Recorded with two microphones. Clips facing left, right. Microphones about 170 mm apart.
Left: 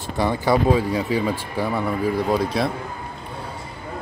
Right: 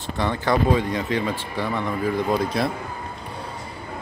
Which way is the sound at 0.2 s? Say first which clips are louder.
Left 2 dB; 10° left (ahead or behind).